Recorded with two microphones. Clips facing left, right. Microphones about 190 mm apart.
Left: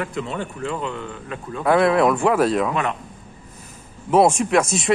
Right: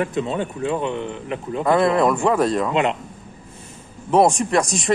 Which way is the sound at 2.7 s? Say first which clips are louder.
Right 4 dB; 20° right (ahead or behind).